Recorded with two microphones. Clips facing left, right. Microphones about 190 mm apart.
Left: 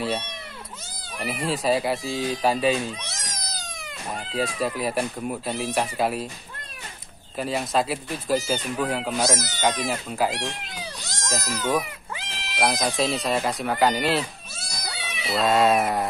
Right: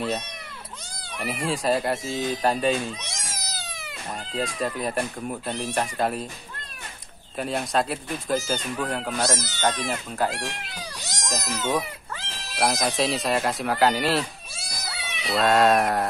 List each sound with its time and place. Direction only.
1.2 s speech: centre (ahead or behind)
3.3 s cat: 5° right (ahead or behind)
4.2 s speech: 5° left (ahead or behind)
7.3 s speech: centre (ahead or behind)
11.4 s speech: 25° right (ahead or behind)
11.7 s cat: 15° left (ahead or behind)
12.5 s speech: centre (ahead or behind)